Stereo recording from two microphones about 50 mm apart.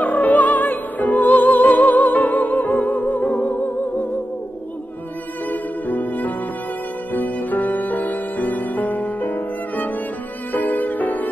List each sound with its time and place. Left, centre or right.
0.0 s music: left
5.5 s music: left